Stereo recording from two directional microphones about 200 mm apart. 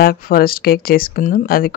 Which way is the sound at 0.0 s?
45° left (ahead or behind).